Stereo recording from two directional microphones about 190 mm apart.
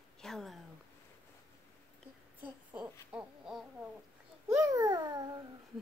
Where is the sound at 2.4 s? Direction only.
10° right (ahead or behind).